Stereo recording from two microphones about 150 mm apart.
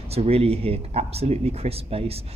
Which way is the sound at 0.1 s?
40° right (ahead or behind).